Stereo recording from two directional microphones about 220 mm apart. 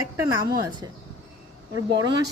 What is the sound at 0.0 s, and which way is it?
Speech, 15° right (ahead or behind).